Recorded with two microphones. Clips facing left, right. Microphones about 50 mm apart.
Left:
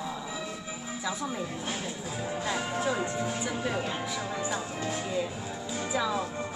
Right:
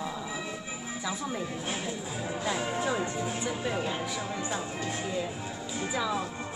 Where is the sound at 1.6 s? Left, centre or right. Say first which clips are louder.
Right 1 dB; centre.